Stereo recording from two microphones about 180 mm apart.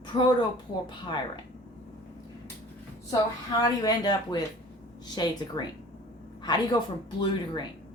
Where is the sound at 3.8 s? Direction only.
20° left (ahead or behind).